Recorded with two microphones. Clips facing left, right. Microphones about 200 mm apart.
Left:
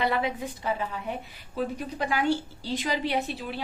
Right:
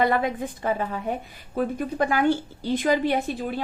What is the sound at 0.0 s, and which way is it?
A woman's voice, 50° right (ahead or behind).